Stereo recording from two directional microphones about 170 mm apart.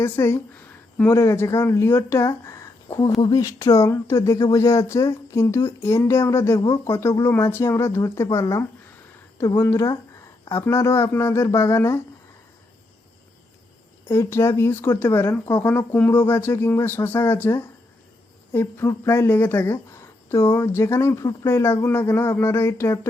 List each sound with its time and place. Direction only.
0.0 s speech: 15° left (ahead or behind)
14.1 s speech: 15° left (ahead or behind)